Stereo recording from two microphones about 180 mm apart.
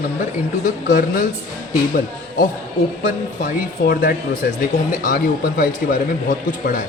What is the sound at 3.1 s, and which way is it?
Speech, 50° left (ahead or behind).